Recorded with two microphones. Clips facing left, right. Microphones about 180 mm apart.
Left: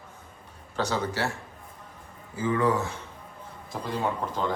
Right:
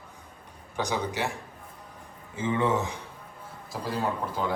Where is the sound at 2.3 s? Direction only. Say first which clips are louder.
Left 1 dB; 25° right (ahead or behind).